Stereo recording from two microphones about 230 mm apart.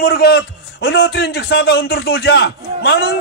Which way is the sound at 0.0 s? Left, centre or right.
Left.